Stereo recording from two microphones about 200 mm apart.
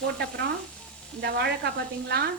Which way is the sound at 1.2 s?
55° right (ahead or behind).